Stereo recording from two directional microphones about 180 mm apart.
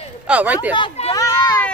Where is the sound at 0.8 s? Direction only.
30° left (ahead or behind).